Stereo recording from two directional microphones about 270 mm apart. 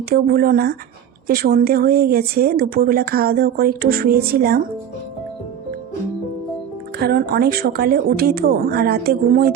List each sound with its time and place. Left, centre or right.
0.1 s speech: right
7.0 s speech: right